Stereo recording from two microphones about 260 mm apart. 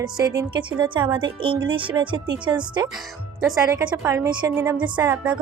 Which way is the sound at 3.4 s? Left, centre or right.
Centre.